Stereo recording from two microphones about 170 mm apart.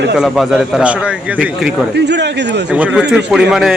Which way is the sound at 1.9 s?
85° right.